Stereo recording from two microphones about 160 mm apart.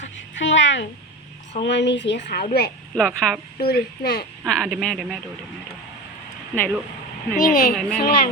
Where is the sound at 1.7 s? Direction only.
90° left.